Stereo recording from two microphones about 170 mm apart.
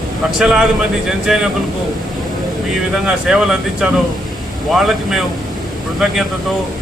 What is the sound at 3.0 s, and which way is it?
Speech, 5° right (ahead or behind).